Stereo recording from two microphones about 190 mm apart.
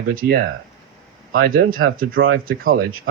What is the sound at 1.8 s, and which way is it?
Speech, 75° right (ahead or behind).